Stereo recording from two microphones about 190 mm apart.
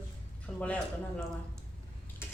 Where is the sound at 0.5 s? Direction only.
5° left (ahead or behind).